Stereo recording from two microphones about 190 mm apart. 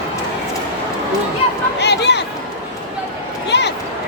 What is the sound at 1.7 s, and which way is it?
Chatter, 65° left (ahead or behind).